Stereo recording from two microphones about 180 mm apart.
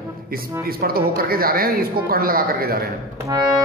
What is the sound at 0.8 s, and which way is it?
Speech, 55° right (ahead or behind).